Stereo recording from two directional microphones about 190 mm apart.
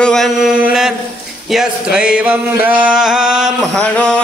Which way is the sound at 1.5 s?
5° right (ahead or behind).